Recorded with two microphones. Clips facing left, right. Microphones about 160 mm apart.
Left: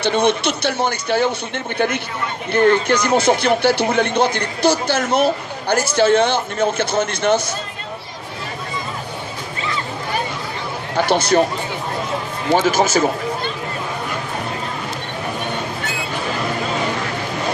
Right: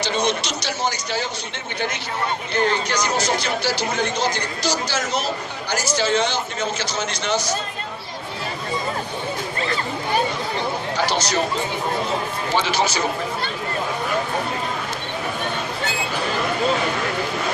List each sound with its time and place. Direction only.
0.0 s speech: 55° left (ahead or behind)
2.5 s speech: 55° left (ahead or behind)
10.9 s speech: 55° left (ahead or behind)
12.5 s speech: 45° left (ahead or behind)